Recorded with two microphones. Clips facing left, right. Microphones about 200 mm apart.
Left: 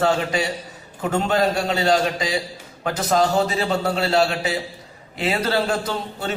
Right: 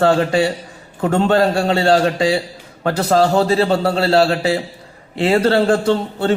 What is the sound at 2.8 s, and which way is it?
A man's voice, 35° right (ahead or behind).